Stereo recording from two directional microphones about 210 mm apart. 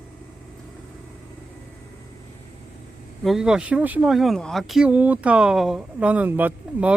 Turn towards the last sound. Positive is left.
turn(degrees=-5)  # may be behind; listen again after turning